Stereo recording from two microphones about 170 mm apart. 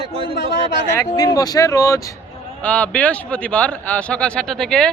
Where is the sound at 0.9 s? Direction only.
20° left (ahead or behind).